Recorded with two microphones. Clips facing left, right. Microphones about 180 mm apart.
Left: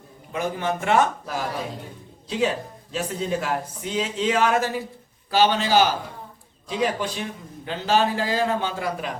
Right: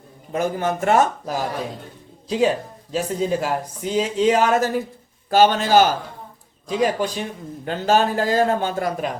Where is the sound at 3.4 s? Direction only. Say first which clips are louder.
Right 3 dB; 40° right (ahead or behind).